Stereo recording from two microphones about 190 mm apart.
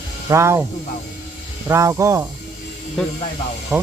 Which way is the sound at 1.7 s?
15° right (ahead or behind).